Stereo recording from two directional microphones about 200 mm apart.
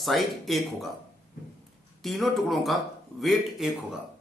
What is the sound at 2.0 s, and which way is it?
Speech, centre (ahead or behind).